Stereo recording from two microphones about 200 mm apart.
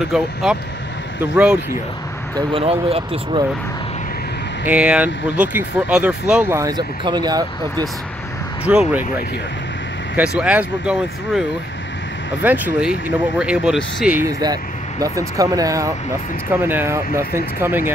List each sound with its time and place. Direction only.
0.1 s speech: centre (ahead or behind)
2.3 s speech: 25° right (ahead or behind)
4.6 s speech: 5° right (ahead or behind)
6.6 s speech: 20° right (ahead or behind)
8.6 s speech: 5° right (ahead or behind)
12.4 s speech: 10° right (ahead or behind)
14.4 s speech: 20° right (ahead or behind)